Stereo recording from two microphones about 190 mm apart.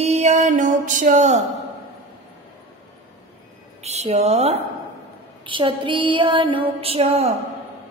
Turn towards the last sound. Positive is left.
turn(degrees=-30)  # may be behind; listen again after turning